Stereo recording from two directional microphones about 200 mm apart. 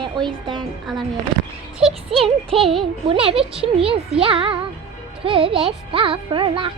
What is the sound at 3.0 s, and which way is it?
Speech, 25° right (ahead or behind).